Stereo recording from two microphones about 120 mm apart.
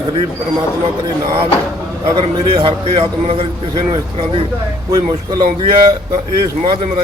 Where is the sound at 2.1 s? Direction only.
50° right (ahead or behind).